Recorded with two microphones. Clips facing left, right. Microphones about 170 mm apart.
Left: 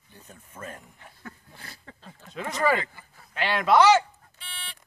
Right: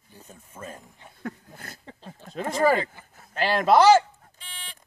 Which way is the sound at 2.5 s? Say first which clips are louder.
Right 3 dB; 35° right (ahead or behind).